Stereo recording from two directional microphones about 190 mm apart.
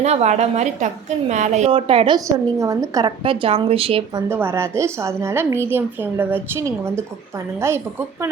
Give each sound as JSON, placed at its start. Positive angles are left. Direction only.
{"t": 0.0, "sound": "a woman's voice", "side_deg": -35}
{"t": 1.7, "sound": "a woman's voice", "side_deg": -25}
{"t": 4.3, "sound": "a woman's voice", "side_deg": -10}